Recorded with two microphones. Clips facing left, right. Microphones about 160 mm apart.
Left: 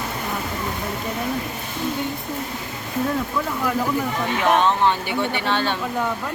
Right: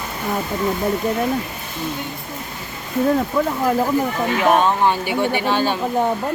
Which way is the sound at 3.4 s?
50° right (ahead or behind).